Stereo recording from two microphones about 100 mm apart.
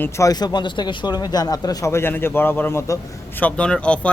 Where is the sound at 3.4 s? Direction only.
15° left (ahead or behind).